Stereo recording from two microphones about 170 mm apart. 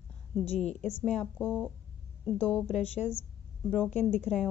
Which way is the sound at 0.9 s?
5° left (ahead or behind).